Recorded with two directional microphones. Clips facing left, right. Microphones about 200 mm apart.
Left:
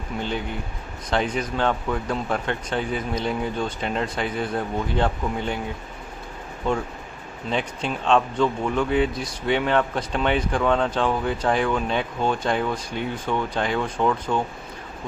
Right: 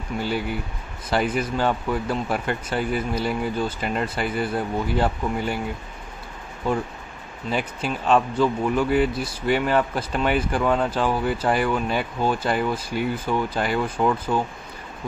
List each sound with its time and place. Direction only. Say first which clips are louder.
0.2 s speech: right 2 dB; 5° right (ahead or behind)
6.7 s speech: even; 5° right (ahead or behind)